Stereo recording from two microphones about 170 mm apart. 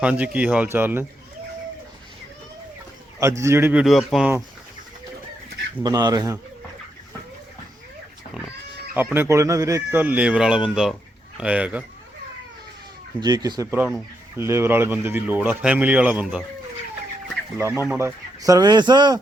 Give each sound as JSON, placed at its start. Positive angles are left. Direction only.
{"t": 0.0, "sound": "a man's voice", "side_deg": -10}
{"t": 3.2, "sound": "a man's voice", "side_deg": -15}
{"t": 5.8, "sound": "speech", "side_deg": -25}
{"t": 9.0, "sound": "a man's voice", "side_deg": -10}
{"t": 13.1, "sound": "a man's voice", "side_deg": -20}
{"t": 17.9, "sound": "speech", "side_deg": -20}